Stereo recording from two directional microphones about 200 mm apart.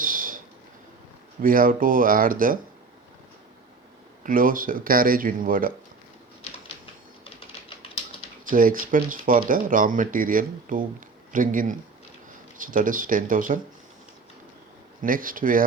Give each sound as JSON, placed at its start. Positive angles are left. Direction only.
{"t": 0.0, "sound": "a sound", "side_deg": -45}
{"t": 1.4, "sound": "speech", "side_deg": -45}
{"t": 4.2, "sound": "speech", "side_deg": -45}
{"t": 8.4, "sound": "speech", "side_deg": -45}
{"t": 15.0, "sound": "speech", "side_deg": -45}